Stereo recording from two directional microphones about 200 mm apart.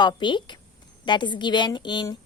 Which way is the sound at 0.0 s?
25° left (ahead or behind).